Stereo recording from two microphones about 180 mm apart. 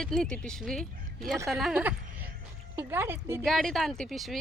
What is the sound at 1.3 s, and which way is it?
Speech, 15° right (ahead or behind).